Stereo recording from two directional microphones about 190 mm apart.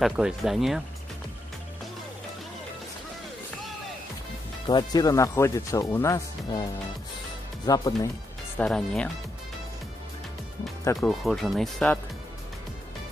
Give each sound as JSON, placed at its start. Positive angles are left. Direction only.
{"t": 0.0, "sound": "speech", "side_deg": 0}
{"t": 4.6, "sound": "speech", "side_deg": 20}
{"t": 7.6, "sound": "speech", "side_deg": 20}
{"t": 8.5, "sound": "speech", "side_deg": 5}
{"t": 10.8, "sound": "speech", "side_deg": 15}
{"t": 11.1, "sound": "speech", "side_deg": 0}